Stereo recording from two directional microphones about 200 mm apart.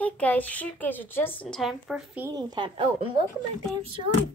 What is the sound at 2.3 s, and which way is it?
Speech, 20° right (ahead or behind).